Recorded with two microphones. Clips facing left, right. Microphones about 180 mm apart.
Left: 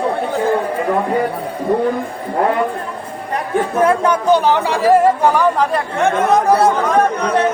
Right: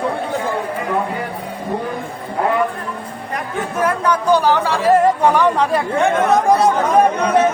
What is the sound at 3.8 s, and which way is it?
Speech, 25° left (ahead or behind).